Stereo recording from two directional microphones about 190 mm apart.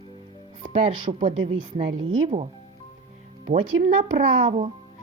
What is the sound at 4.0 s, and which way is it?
Speech, 35° right (ahead or behind).